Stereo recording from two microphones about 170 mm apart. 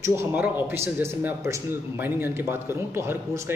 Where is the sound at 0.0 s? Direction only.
15° right (ahead or behind).